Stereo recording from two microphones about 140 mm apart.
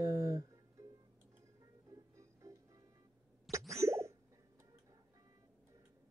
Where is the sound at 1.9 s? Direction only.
25° right (ahead or behind).